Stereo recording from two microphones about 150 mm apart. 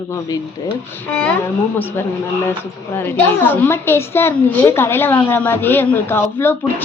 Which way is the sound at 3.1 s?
15° left (ahead or behind).